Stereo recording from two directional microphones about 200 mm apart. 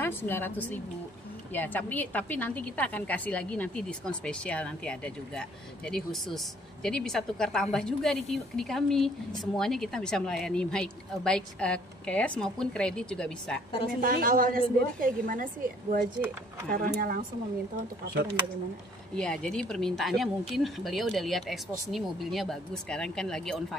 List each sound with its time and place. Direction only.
0.0 s a woman's voice: 10° left (ahead or behind)
14.0 s a woman's voice: 45° right (ahead or behind)
19.1 s a woman's voice: 5° left (ahead or behind)